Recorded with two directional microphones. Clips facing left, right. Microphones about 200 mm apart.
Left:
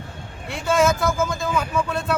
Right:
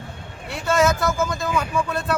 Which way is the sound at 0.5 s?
Centre (ahead or behind).